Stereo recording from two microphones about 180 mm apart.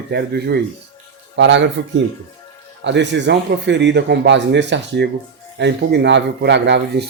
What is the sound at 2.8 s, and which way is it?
Speech, 80° right.